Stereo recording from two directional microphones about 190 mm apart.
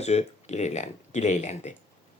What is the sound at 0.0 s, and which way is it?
Speech, 35° left (ahead or behind).